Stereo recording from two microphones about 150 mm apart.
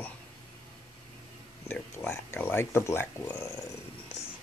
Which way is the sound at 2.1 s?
15° left (ahead or behind).